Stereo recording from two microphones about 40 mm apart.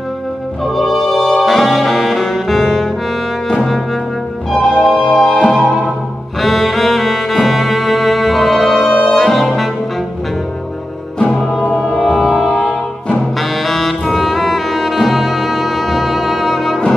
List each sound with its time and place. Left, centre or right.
0.7 s brass instrument: centre
4.5 s organ: centre
5.2 s music: centre
6.4 s music: centre
9.1 s brass instrument: centre
11.8 s music: centre